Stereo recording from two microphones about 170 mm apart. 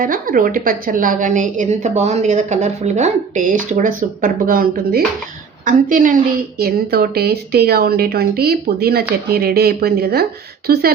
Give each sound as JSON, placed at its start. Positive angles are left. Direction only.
{"t": 0.0, "sound": "a woman's voice", "side_deg": -55}
{"t": 6.6, "sound": "a woman's voice", "side_deg": -65}